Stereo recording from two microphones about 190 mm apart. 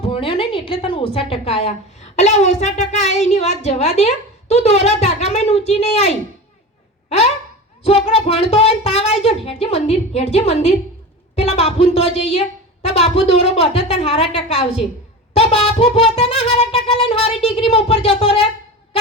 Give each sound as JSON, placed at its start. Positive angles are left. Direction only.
{"t": 0.0, "sound": "a woman's voice", "side_deg": 30}
{"t": 7.9, "sound": "a woman's voice", "side_deg": 30}
{"t": 15.4, "sound": "music", "side_deg": 30}